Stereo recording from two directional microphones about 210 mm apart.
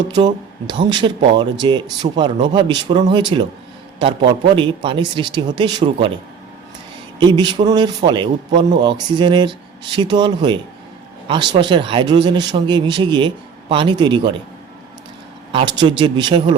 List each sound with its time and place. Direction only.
0.1 s a man's voice: 20° right (ahead or behind)
7.2 s a man's voice: 20° right (ahead or behind)
15.5 s a man's voice: 20° right (ahead or behind)